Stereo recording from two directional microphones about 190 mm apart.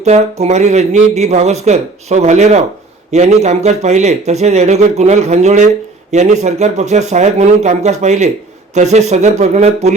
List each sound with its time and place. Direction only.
0.0 s speech: 35° right (ahead or behind)